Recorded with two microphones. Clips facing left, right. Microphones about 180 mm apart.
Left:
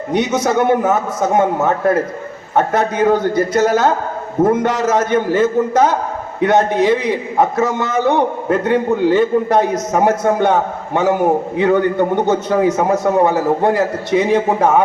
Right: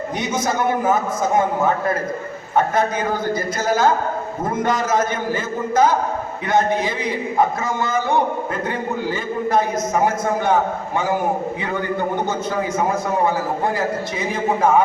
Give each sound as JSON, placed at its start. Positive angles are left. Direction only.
{"t": 0.1, "sound": "a man's voice", "side_deg": 70}
{"t": 2.6, "sound": "a man's voice", "side_deg": 75}